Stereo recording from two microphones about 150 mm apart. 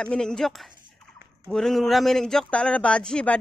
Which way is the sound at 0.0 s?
5° left (ahead or behind).